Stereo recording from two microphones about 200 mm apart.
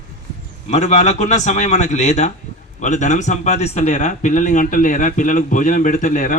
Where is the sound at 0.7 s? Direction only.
35° left (ahead or behind).